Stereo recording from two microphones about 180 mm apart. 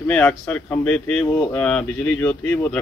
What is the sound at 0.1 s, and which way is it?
Speech, 5° left (ahead or behind).